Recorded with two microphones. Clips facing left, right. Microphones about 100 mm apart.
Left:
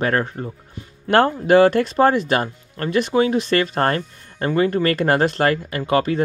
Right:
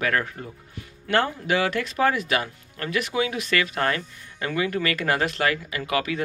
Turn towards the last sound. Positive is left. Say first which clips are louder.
# left 7 dB
turn(degrees=35)  # may be behind; listen again after turning